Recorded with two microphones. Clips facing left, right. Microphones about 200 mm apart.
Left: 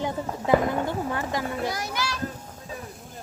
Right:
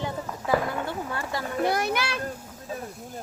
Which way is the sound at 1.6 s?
60° right (ahead or behind).